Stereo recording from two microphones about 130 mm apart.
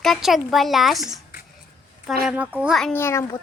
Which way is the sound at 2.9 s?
20° left (ahead or behind).